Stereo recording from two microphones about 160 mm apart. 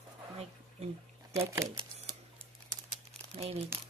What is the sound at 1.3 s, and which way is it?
Speech, 20° right (ahead or behind).